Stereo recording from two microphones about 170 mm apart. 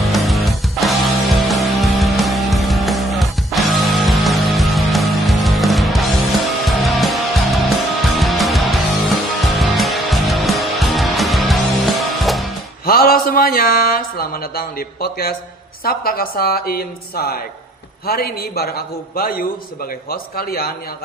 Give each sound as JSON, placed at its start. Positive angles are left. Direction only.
{"t": 0.0, "sound": "music", "side_deg": 0}
{"t": 12.8, "sound": "a woman's voice", "side_deg": 60}